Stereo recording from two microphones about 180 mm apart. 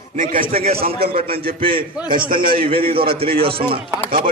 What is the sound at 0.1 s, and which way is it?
A man's voice, 50° right (ahead or behind).